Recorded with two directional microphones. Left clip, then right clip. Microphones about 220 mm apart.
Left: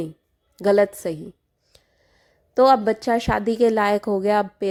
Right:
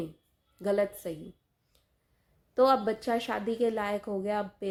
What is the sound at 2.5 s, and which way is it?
A woman's voice, 35° left (ahead or behind).